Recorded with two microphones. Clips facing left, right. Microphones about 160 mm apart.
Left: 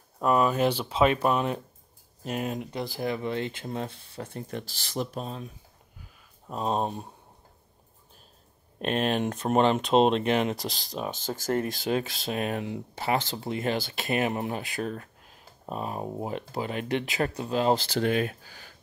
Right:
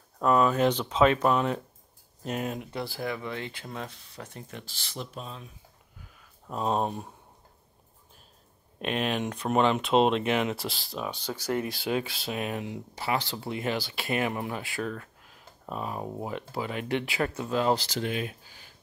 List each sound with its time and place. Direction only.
0.2 s speech: 15° left (ahead or behind); by 4.4 s 30° left (ahead or behind)
4.4 s speech: 40° left (ahead or behind)
6.5 s speech: 20° left (ahead or behind)
8.8 s speech: 40° left (ahead or behind)
13.0 s speech: 45° left (ahead or behind)
14.0 s speech: 25° left (ahead or behind)
17.5 s speech: 20° left (ahead or behind)
17.7 s speech: 55° left (ahead or behind)
18.4 s speech: 75° left (ahead or behind)